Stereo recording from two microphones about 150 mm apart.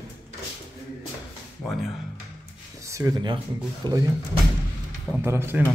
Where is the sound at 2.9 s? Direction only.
25° right (ahead or behind).